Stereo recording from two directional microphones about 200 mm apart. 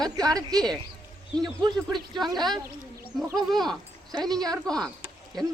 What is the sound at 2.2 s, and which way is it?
Speech, centre (ahead or behind).